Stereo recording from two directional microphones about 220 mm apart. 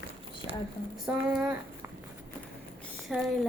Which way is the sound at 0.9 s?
Centre (ahead or behind).